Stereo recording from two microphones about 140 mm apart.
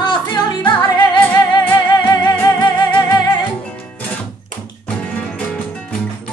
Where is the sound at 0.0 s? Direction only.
35° left (ahead or behind).